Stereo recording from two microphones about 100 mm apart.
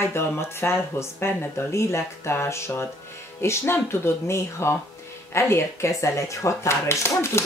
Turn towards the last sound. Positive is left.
turn(degrees=25)  # may be behind; listen again after turning